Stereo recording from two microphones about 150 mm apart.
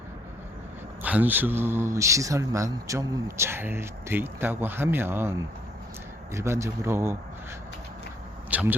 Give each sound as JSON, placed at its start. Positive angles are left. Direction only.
{"t": 1.0, "sound": "speech", "side_deg": -10}
{"t": 6.3, "sound": "speech", "side_deg": -20}
{"t": 8.4, "sound": "speech", "side_deg": -10}